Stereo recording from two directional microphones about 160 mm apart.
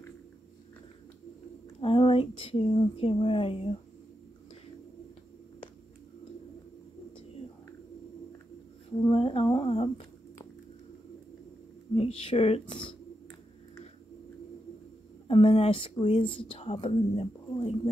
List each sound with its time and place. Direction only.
1.8 s speech: 35° left (ahead or behind)
9.0 s a sound: 35° left (ahead or behind)
11.9 s speech: 35° left (ahead or behind)
15.2 s speech: 35° left (ahead or behind)